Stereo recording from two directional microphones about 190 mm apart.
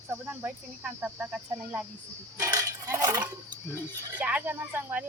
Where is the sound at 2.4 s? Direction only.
15° right (ahead or behind).